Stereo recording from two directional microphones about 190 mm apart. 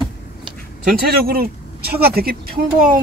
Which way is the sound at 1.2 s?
55° right (ahead or behind).